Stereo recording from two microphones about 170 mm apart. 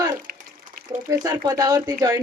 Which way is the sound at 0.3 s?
70° right (ahead or behind).